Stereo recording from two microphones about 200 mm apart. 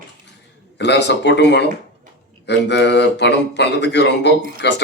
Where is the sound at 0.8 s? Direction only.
60° left (ahead or behind).